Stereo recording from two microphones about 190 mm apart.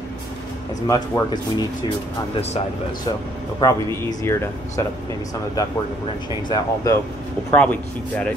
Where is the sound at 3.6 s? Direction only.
20° left (ahead or behind).